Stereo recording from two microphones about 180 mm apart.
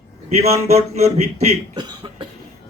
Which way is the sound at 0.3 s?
35° right (ahead or behind).